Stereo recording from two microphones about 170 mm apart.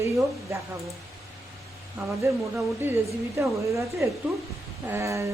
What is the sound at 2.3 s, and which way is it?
Speech, 15° right (ahead or behind).